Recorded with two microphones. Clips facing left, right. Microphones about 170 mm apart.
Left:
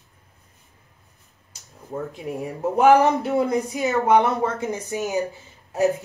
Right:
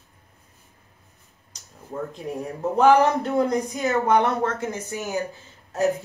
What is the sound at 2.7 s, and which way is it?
Speech, 10° left (ahead or behind).